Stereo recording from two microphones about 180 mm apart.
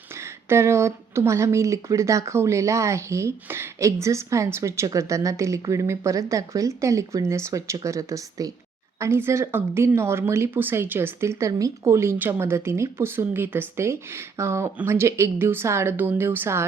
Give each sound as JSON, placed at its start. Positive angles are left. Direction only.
{"t": 0.2, "sound": "speech", "side_deg": -15}